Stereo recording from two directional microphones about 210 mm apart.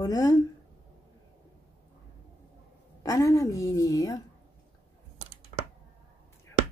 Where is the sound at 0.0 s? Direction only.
15° left (ahead or behind).